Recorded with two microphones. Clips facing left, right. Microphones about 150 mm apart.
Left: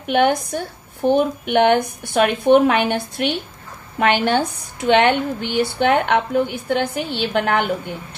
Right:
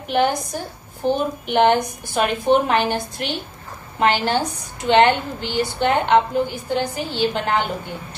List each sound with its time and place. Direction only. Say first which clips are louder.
0.0 s a woman's voice: left 3 dB; 60° left (ahead or behind)